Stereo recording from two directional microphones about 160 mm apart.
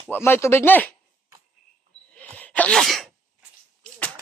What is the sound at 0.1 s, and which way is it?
Speech, 15° left (ahead or behind).